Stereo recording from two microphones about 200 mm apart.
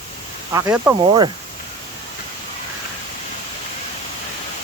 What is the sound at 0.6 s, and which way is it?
Speech, 10° right (ahead or behind).